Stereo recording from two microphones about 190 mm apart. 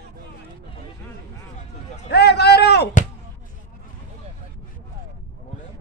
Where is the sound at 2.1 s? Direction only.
60° left (ahead or behind).